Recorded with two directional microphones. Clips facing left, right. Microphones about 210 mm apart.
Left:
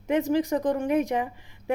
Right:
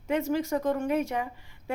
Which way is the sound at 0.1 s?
15° left (ahead or behind).